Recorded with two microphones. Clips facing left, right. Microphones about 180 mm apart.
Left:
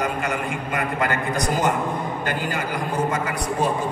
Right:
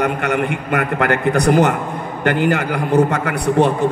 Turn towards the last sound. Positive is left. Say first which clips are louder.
# right 8 dB
turn(degrees=-65)  # may be behind; listen again after turning